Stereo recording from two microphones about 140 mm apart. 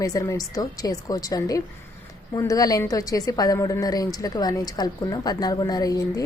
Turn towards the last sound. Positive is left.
turn(degrees=25)  # may be behind; listen again after turning